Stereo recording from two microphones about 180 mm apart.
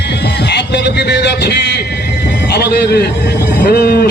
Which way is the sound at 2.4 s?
65° left (ahead or behind).